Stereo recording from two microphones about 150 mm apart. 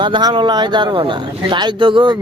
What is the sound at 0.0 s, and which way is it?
Speech, 30° right (ahead or behind).